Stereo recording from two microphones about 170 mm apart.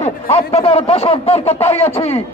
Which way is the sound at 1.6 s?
10° left (ahead or behind).